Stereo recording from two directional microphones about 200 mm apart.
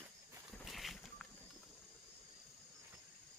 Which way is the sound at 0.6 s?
Centre (ahead or behind).